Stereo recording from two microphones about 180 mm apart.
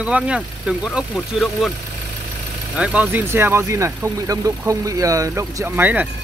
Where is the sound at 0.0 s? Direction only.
5° right (ahead or behind).